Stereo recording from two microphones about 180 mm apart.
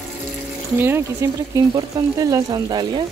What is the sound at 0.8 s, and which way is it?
Speech, 15° right (ahead or behind).